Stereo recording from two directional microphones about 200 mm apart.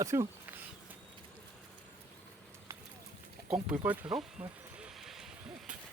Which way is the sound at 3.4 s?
10° right (ahead or behind).